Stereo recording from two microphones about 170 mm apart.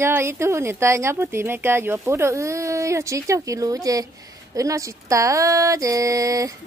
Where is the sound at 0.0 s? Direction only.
15° right (ahead or behind).